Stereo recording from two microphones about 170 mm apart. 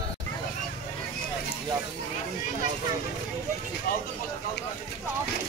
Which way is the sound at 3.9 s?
60° left (ahead or behind).